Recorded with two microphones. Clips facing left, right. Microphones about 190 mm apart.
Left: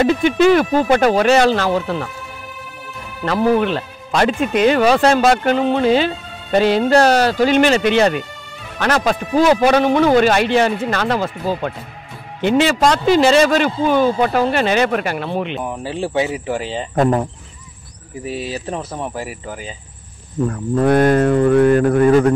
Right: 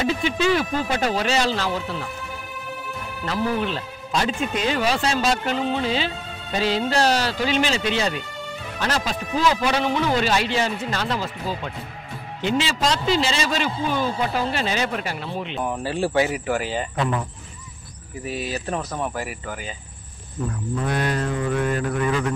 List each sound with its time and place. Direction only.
0.0 s speech: 55° left (ahead or behind)
3.3 s speech: 65° left (ahead or behind)
15.6 s speech: 15° left (ahead or behind)
16.9 s speech: 45° left (ahead or behind)
18.2 s speech: 30° left (ahead or behind)
20.4 s speech: 55° left (ahead or behind)